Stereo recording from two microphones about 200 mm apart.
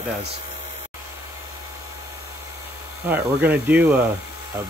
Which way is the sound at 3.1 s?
10° right (ahead or behind).